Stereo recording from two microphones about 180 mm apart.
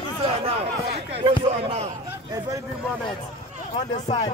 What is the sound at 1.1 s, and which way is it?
Speech, 35° right (ahead or behind).